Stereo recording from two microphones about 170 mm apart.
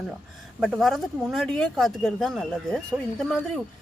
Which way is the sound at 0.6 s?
Centre (ahead or behind).